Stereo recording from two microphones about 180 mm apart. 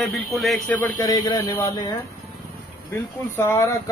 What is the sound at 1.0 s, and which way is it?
Speech, 25° left (ahead or behind).